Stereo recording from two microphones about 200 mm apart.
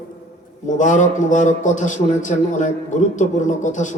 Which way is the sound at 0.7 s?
40° left (ahead or behind).